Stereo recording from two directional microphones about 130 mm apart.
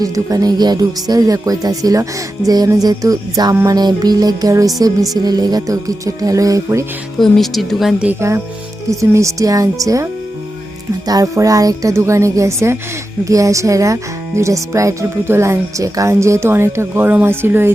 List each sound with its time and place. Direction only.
0.0 s speech: 25° right (ahead or behind)
7.2 s speech: centre (ahead or behind)
8.9 s speech: 25° right (ahead or behind)